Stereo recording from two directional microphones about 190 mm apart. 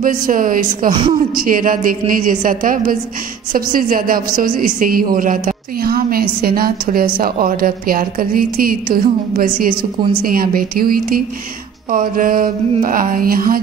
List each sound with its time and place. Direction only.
0.0 s a woman's voice: 45° right (ahead or behind)